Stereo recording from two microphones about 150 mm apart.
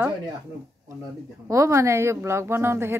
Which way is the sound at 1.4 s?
20° right (ahead or behind).